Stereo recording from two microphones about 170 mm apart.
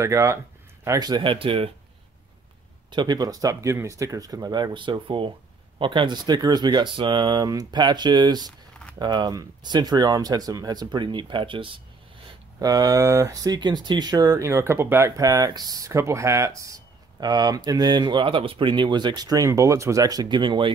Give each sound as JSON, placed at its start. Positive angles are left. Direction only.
{"t": 0.0, "sound": "speech", "side_deg": -15}
{"t": 2.9, "sound": "speech", "side_deg": -25}